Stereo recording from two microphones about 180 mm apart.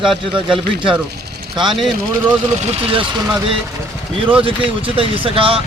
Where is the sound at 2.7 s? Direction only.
30° right (ahead or behind).